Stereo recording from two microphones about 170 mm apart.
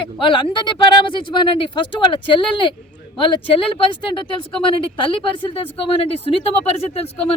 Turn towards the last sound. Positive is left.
turn(degrees=35)  # may be behind; listen again after turning